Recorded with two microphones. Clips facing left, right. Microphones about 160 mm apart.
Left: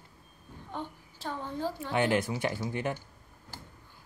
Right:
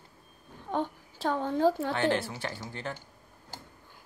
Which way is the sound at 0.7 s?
80° right.